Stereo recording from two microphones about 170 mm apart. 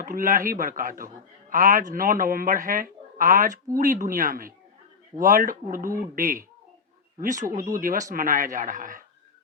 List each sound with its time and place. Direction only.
0.0 s a man's voice: 55° right (ahead or behind)